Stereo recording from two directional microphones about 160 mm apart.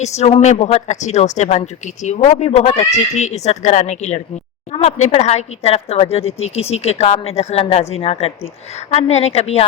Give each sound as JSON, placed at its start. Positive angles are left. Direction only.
{"t": 0.0, "sound": "speech", "side_deg": 45}